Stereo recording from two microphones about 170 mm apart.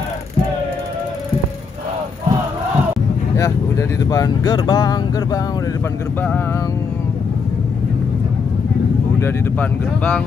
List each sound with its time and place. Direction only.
3.3 s speech: 20° left (ahead or behind)
9.2 s speech: 10° left (ahead or behind)